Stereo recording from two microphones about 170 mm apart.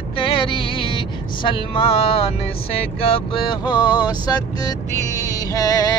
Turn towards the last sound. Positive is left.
turn(degrees=20)  # may be behind; listen again after turning